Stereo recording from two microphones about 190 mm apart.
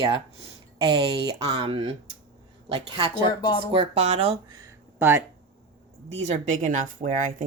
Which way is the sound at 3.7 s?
35° right (ahead or behind).